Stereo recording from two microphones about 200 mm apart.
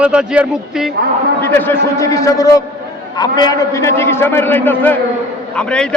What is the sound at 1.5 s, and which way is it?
A man's voice, 10° left (ahead or behind).